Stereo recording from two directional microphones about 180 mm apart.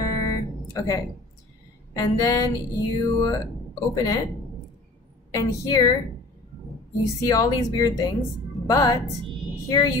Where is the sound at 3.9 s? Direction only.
20° left (ahead or behind).